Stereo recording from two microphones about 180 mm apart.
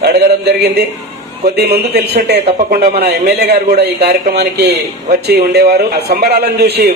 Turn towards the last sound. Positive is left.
turn(degrees=-65)  # may be behind; listen again after turning